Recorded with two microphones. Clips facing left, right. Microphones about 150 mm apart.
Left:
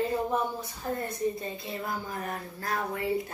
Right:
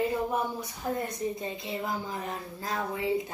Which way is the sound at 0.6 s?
15° right (ahead or behind).